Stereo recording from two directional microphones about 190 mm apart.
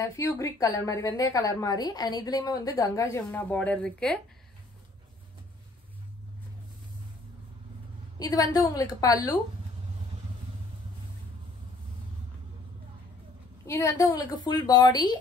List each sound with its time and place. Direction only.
0.0 s a woman's voice: 15° left (ahead or behind)
8.2 s a woman's voice: 20° left (ahead or behind)
13.7 s a woman's voice: 15° left (ahead or behind)